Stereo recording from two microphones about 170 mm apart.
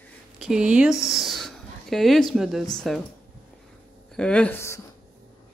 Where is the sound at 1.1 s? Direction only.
Centre (ahead or behind).